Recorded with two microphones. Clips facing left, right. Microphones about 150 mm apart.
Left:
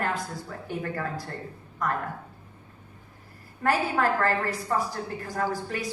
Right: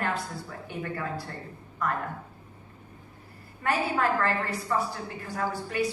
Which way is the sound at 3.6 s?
40° left (ahead or behind).